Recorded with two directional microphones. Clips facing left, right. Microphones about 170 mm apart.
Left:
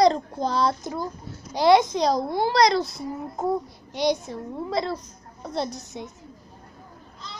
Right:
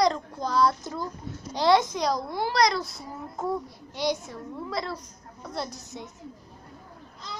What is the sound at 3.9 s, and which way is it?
A child's voice, 15° left (ahead or behind).